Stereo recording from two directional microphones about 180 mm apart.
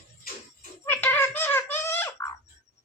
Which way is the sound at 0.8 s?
10° left (ahead or behind).